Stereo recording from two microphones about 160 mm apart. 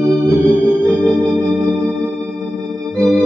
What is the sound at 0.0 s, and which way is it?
Organ, 20° right (ahead or behind).